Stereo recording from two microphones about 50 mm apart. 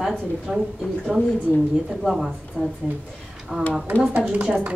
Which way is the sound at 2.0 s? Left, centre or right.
Centre.